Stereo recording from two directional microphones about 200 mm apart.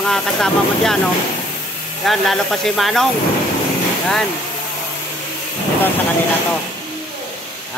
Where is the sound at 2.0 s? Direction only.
Centre (ahead or behind).